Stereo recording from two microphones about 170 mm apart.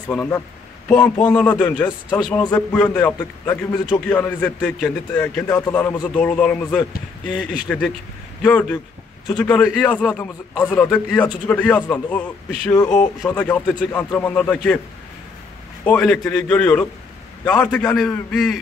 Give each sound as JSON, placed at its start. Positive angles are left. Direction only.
{"t": 0.1, "sound": "a man's voice", "side_deg": 10}
{"t": 1.9, "sound": "a man's voice", "side_deg": 25}
{"t": 2.3, "sound": "a man's voice", "side_deg": 10}
{"t": 15.8, "sound": "a man's voice", "side_deg": 10}